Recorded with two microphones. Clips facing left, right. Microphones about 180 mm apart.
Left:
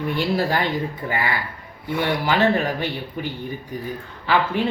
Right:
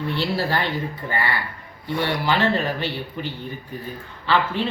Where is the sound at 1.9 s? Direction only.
15° left (ahead or behind).